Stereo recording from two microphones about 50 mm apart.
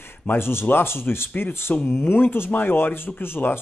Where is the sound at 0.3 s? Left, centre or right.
Left.